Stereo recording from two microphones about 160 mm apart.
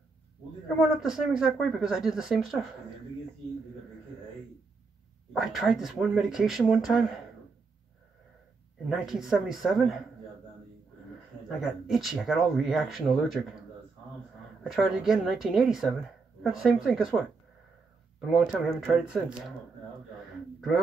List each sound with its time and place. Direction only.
0.7 s speech: 5° right (ahead or behind)
5.3 s speech: centre (ahead or behind)
8.8 s speech: centre (ahead or behind)
11.4 s speech: centre (ahead or behind)
14.6 s speech: centre (ahead or behind)
18.3 s speech: centre (ahead or behind)